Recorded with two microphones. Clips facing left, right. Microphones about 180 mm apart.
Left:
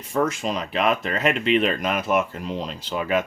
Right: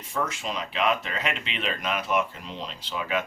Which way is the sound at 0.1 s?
45° left (ahead or behind).